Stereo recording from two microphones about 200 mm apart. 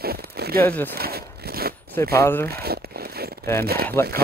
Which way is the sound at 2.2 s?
10° left (ahead or behind).